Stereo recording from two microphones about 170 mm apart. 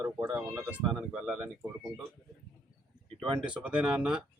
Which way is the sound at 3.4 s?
5° right (ahead or behind).